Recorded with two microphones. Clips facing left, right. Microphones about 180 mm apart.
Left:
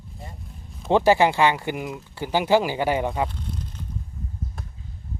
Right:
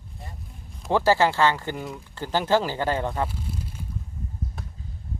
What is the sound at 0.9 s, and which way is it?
Speech, 20° left (ahead or behind).